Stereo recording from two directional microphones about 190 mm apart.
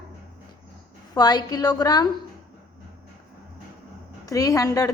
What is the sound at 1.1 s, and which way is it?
Speech, 20° left (ahead or behind).